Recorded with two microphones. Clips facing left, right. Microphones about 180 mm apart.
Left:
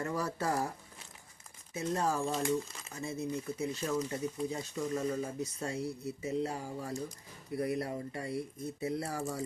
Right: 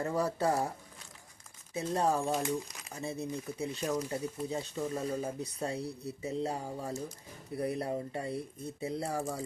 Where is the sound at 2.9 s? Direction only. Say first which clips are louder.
Even; 35° right (ahead or behind).